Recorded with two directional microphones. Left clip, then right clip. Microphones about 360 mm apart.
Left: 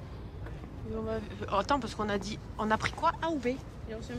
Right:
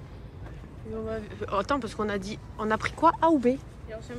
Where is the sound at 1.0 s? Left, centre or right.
Centre.